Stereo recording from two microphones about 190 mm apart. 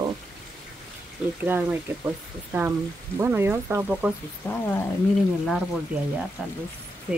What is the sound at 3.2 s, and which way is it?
Speech, 10° right (ahead or behind).